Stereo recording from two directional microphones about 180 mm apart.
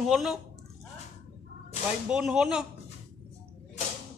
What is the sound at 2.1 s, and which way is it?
Speech, 5° right (ahead or behind).